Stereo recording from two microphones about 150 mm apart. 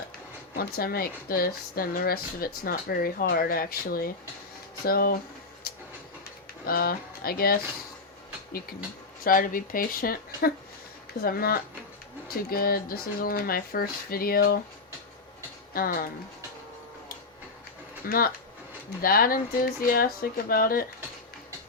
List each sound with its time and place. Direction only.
0.5 s speech: 90° left
6.7 s speech: 85° left
9.2 s speech: 70° left (ahead or behind); by 14.6 s 85° left
15.7 s speech: 75° left (ahead or behind)
18.0 s speech: 80° left